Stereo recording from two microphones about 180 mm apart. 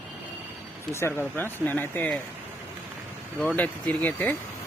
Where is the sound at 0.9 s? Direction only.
15° left (ahead or behind).